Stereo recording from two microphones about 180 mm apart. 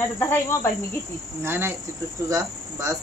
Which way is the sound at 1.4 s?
15° right (ahead or behind).